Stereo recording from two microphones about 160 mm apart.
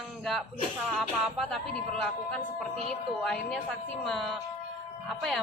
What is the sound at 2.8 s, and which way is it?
Speech, centre (ahead or behind).